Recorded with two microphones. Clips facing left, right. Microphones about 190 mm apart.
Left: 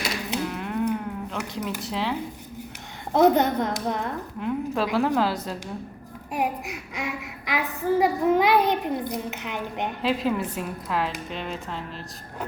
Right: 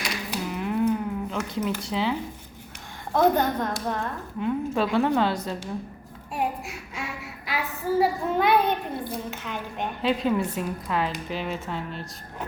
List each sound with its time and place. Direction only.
0.4 s music: centre (ahead or behind)
1.8 s a woman's voice: centre (ahead or behind)
3.1 s a woman's voice: 20° left (ahead or behind)
4.4 s a woman's voice: centre (ahead or behind)
6.3 s a woman's voice: 15° left (ahead or behind)
10.0 s a woman's voice: centre (ahead or behind)